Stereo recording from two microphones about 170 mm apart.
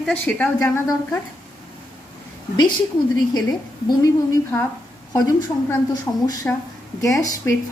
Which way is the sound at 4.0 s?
20° left (ahead or behind).